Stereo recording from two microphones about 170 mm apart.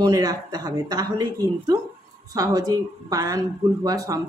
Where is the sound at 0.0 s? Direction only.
20° right (ahead or behind).